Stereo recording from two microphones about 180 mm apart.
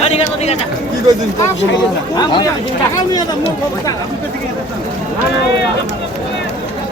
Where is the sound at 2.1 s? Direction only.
20° left (ahead or behind).